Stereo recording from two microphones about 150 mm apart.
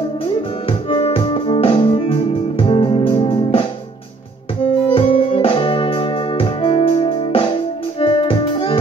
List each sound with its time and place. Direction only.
0.2 s music: 40° left (ahead or behind)
4.6 s music: 40° left (ahead or behind)